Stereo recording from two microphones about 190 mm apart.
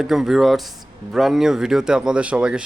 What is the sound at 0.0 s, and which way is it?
Speech, centre (ahead or behind).